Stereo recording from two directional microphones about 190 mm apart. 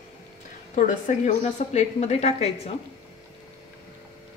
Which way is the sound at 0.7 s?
45° left (ahead or behind).